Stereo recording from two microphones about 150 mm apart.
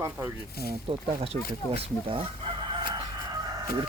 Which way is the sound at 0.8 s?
40° right (ahead or behind).